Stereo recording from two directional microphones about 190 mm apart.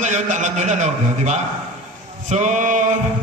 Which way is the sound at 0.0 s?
40° right (ahead or behind).